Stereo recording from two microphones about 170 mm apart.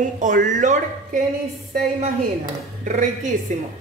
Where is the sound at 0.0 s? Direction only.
50° right (ahead or behind).